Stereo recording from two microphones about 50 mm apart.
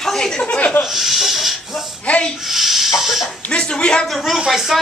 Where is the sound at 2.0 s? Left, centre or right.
Left.